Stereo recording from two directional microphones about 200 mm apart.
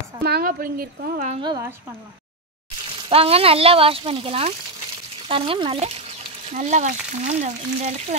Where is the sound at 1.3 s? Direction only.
20° right (ahead or behind).